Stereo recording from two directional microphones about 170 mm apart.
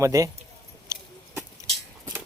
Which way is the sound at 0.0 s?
20° right (ahead or behind).